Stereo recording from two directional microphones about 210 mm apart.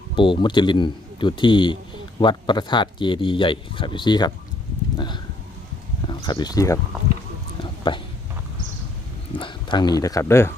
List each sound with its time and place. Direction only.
0.2 s speech: 25° left (ahead or behind)
4.9 s a sound: 20° left (ahead or behind)
6.1 s speech: 20° left (ahead or behind)
7.9 s speech: 25° left (ahead or behind)
9.3 s speech: 25° left (ahead or behind)